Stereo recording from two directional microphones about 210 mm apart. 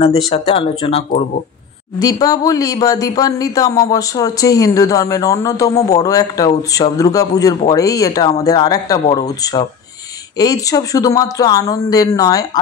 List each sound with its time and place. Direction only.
0.3 s speech: 25° left (ahead or behind)
2.0 s speech: 15° left (ahead or behind)